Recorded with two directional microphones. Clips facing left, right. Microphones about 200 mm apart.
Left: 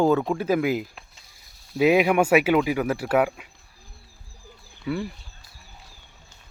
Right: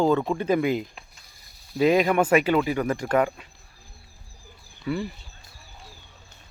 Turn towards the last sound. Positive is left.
turn(degrees=0)  # may be behind; listen again after turning